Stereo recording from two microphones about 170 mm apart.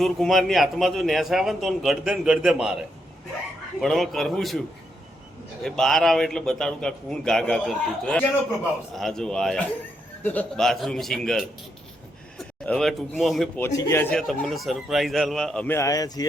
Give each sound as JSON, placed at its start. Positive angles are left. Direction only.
{"t": 0.0, "sound": "a man's voice", "side_deg": 0}
{"t": 3.8, "sound": "a man's voice", "side_deg": 0}
{"t": 5.6, "sound": "a man's voice", "side_deg": 0}
{"t": 13.6, "sound": "a man's voice", "side_deg": 15}
{"t": 14.1, "sound": "a man's voice", "side_deg": 5}